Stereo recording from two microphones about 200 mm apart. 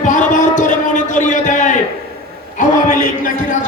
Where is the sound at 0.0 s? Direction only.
40° left (ahead or behind).